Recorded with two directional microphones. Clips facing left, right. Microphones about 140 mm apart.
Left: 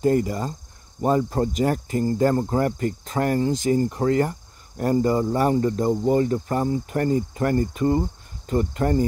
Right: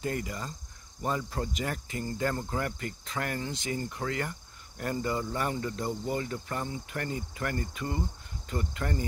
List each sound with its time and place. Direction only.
0.0 s cricket: 40° left (ahead or behind)
1.0 s speech: 40° left (ahead or behind)